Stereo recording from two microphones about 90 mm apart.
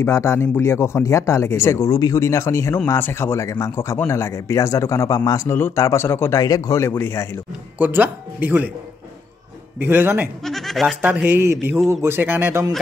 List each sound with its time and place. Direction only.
0.0 s speech: 30° left (ahead or behind)
7.8 s speech: 20° right (ahead or behind)
9.8 s speech: 25° right (ahead or behind)
10.4 s speech: centre (ahead or behind)
11.0 s speech: 20° right (ahead or behind)